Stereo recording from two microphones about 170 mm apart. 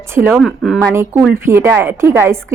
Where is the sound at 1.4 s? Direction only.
15° right (ahead or behind).